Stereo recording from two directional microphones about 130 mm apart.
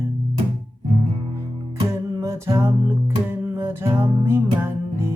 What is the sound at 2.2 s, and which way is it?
Music, 25° right (ahead or behind).